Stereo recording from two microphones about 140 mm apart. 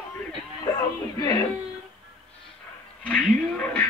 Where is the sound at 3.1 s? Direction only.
10° left (ahead or behind).